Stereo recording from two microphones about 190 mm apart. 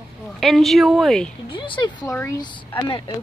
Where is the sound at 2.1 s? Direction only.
15° left (ahead or behind).